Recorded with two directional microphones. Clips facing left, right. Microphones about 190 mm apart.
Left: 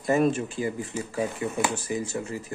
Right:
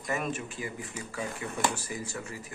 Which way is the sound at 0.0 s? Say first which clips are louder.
Left 10 dB; 30° left (ahead or behind).